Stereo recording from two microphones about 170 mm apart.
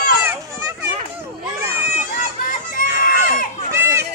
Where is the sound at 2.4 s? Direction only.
55° left (ahead or behind).